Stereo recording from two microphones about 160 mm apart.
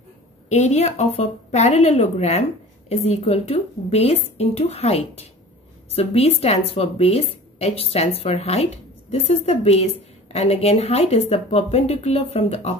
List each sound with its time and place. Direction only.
0.5 s a woman's voice: 45° left (ahead or behind)